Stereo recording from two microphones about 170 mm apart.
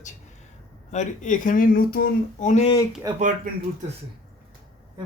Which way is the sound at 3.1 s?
20° right (ahead or behind).